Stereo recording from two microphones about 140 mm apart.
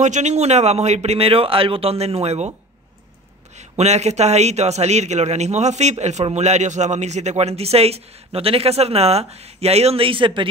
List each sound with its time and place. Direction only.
0.0 s a man's voice: 55° right (ahead or behind)
3.5 s a man's voice: 55° right (ahead or behind); by 10.5 s 35° right (ahead or behind)